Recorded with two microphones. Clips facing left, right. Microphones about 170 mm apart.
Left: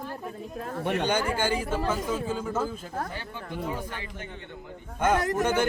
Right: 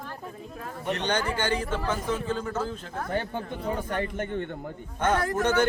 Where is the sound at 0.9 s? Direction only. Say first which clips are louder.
Left 1 dB; 10° left (ahead or behind).